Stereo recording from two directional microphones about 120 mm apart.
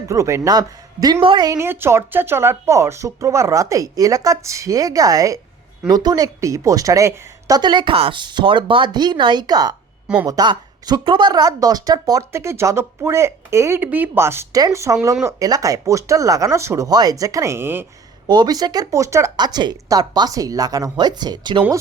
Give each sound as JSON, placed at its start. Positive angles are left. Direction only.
{"t": 0.1, "sound": "speech", "side_deg": -25}
{"t": 1.2, "sound": "a woman's voice", "side_deg": -45}
{"t": 1.5, "sound": "a woman's voice", "side_deg": -20}
{"t": 18.3, "sound": "a woman's voice", "side_deg": -35}